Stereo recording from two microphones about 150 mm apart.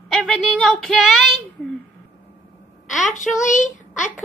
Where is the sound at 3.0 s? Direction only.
55° left (ahead or behind).